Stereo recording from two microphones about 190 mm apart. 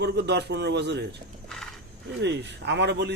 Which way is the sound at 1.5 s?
5° left (ahead or behind).